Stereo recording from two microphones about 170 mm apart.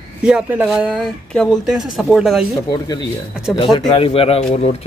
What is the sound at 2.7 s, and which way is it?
A man's voice, 25° left (ahead or behind).